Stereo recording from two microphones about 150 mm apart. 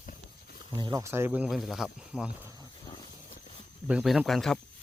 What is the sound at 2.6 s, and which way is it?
Vehicle, 30° left (ahead or behind).